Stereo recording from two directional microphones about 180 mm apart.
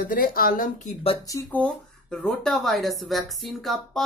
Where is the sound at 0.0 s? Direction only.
55° left (ahead or behind).